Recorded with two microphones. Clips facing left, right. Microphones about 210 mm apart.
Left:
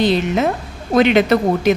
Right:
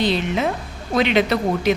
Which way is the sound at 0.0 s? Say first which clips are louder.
Left 4 dB; 50° left (ahead or behind).